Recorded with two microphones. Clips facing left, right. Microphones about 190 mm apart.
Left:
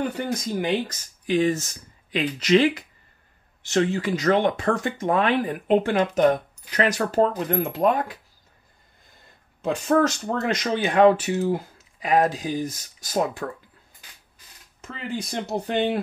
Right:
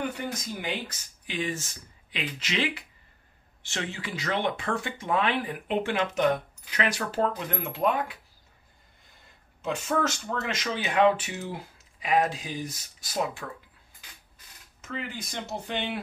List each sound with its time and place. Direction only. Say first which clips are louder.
0.1 s speech: left 7 dB; 40° left (ahead or behind)
9.6 s speech: left 7 dB; 35° left (ahead or behind)
14.8 s speech: left 5 dB; 35° left (ahead or behind)